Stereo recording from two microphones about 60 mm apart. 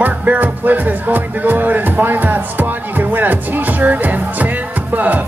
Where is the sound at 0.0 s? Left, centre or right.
Right.